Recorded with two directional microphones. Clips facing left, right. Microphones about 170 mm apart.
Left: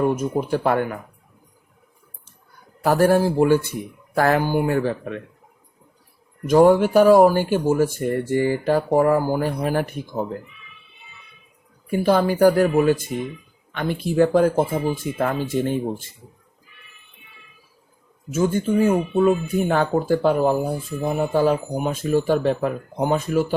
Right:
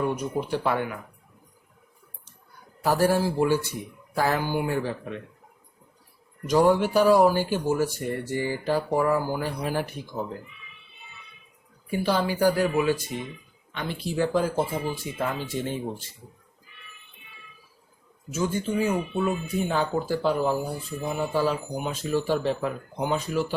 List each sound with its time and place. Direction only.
0.0 s speech: 45° left (ahead or behind)
2.8 s speech: 55° left (ahead or behind)
6.5 s speech: 50° left (ahead or behind)
11.9 s speech: 50° left (ahead or behind)
18.3 s speech: 55° left (ahead or behind)